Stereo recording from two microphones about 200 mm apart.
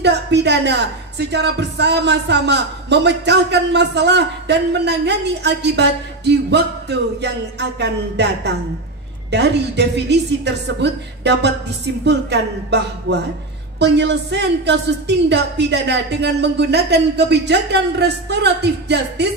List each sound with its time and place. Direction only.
0.0 s a woman's voice: 60° right (ahead or behind)